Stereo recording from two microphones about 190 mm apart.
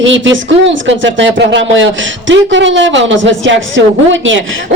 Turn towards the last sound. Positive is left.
turn(degrees=-90)